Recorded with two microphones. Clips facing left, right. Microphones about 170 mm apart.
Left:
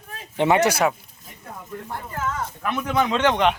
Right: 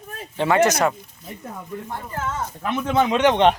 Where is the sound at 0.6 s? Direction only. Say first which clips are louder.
Right 1 dB; 5° left (ahead or behind).